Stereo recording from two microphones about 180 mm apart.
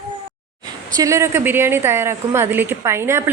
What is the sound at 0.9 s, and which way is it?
A woman's voice, 15° right (ahead or behind).